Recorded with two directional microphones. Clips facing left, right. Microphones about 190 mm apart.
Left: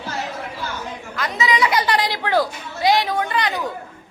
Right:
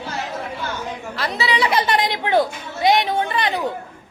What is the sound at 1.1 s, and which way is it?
A child's voice, 35° right (ahead or behind).